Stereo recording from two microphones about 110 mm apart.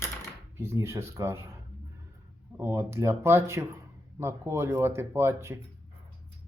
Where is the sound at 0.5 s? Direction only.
25° right (ahead or behind).